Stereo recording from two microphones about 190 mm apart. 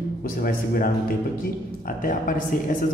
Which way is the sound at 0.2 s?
50° left (ahead or behind).